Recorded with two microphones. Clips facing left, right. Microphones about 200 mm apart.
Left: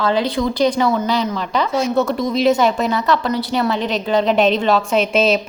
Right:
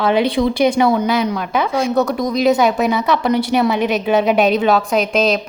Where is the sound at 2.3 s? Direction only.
Centre (ahead or behind).